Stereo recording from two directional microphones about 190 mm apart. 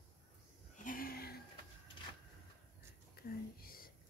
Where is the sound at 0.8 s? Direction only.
50° left (ahead or behind).